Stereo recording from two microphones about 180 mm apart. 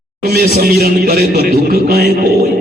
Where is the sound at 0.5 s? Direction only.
60° right (ahead or behind).